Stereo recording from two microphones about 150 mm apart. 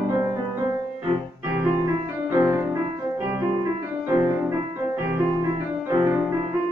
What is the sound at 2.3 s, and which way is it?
Music, 20° right (ahead or behind).